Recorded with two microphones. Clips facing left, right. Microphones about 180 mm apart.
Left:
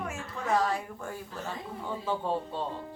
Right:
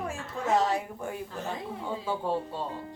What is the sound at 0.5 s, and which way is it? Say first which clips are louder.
Speech: right 2 dB; 20° right (ahead or behind).